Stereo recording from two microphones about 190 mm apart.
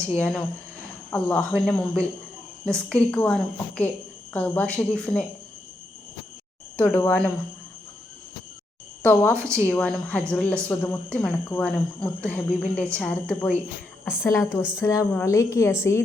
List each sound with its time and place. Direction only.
0.2 s a woman's voice: 5° left (ahead or behind)
6.7 s speech: 10° left (ahead or behind)
9.6 s a woman's voice: 5° left (ahead or behind)
14.0 s a woman's voice: 5° right (ahead or behind)
14.3 s speech: 10° left (ahead or behind)